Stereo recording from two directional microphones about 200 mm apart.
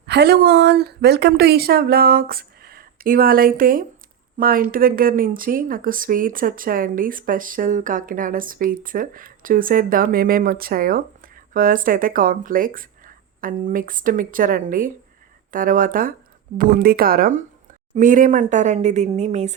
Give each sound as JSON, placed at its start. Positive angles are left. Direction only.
{"t": 0.1, "sound": "a woman's voice", "side_deg": -55}